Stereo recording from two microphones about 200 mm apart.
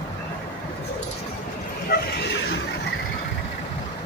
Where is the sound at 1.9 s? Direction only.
60° left (ahead or behind).